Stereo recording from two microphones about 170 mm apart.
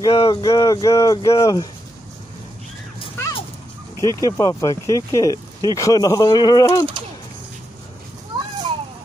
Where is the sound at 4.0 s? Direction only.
25° right (ahead or behind).